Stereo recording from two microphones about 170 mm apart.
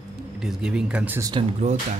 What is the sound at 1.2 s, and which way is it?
Speech, 25° right (ahead or behind).